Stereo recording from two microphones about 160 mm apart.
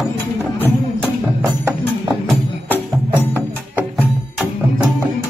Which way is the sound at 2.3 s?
5° left (ahead or behind).